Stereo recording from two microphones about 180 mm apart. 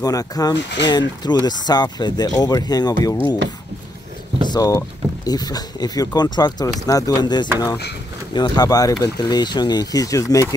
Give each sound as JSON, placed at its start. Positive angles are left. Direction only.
{"t": 0.0, "sound": "speech", "side_deg": 20}
{"t": 4.5, "sound": "speech", "side_deg": 20}